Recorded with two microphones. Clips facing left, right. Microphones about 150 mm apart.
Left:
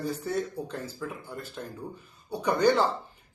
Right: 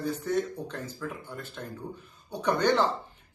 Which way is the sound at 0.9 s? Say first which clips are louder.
Even; 10° left (ahead or behind).